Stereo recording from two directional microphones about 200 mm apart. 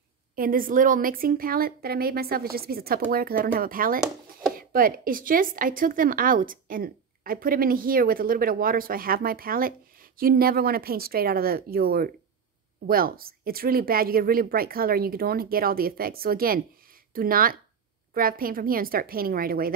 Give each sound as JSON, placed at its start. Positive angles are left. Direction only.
{"t": 0.4, "sound": "a woman's voice", "side_deg": -45}